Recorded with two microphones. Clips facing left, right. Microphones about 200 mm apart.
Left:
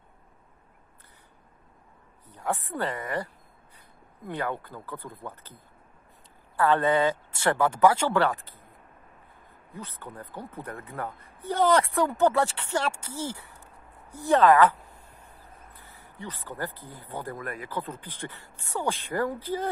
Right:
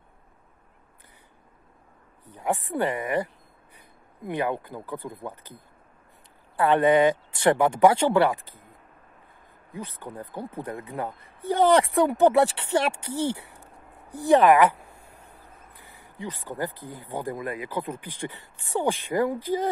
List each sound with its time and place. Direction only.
2.3 s speech: 15° right (ahead or behind)
4.3 s speech: 15° right (ahead or behind)
9.8 s speech: 15° right (ahead or behind)
13.1 s speech: 70° right (ahead or behind)
13.6 s a sound: 15° right (ahead or behind)
15.7 s speech: 15° right (ahead or behind)